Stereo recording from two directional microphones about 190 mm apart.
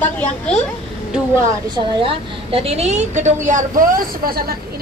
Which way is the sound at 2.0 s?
30° right (ahead or behind).